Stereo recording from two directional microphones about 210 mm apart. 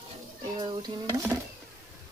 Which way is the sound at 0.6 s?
20° right (ahead or behind).